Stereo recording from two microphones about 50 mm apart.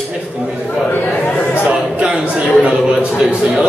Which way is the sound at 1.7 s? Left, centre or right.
Centre.